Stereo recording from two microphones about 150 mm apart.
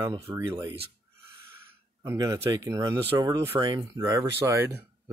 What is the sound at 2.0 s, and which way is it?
Speech, 20° right (ahead or behind).